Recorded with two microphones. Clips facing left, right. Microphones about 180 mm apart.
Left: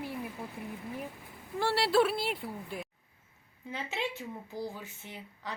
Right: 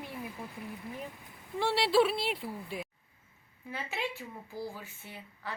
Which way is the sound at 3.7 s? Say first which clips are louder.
Left 1 dB; 20° left (ahead or behind).